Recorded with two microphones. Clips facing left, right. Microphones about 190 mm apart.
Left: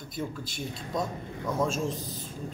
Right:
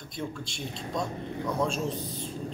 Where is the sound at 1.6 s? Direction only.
Centre (ahead or behind).